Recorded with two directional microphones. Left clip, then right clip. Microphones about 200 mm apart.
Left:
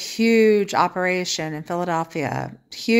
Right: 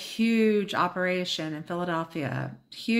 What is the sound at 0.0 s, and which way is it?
Speech, 35° left (ahead or behind).